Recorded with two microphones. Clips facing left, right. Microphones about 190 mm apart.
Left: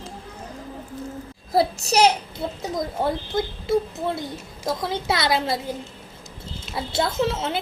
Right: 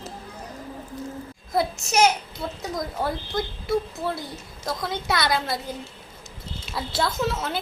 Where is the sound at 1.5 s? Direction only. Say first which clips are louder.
Left 4 dB; 35° left (ahead or behind).